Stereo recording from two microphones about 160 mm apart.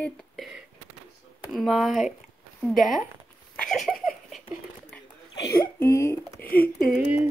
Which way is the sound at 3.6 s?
5° left (ahead or behind).